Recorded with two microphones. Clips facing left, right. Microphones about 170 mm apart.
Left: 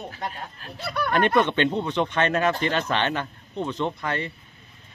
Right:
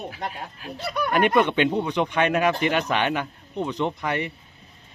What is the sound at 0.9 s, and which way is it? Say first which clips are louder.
Speech: right 1 dB; 10° right (ahead or behind).